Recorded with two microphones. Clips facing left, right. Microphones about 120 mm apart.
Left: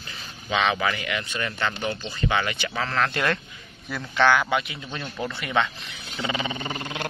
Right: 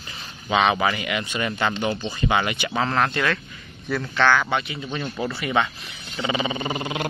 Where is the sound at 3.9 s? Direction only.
15° left (ahead or behind).